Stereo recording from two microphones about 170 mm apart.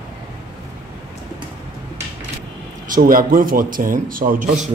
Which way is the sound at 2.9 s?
55° right (ahead or behind).